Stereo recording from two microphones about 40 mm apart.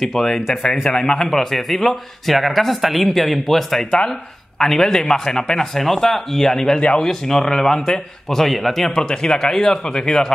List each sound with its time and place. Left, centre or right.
0.0 s a man's voice: centre
5.9 s a man's voice: centre
8.9 s a man's voice: centre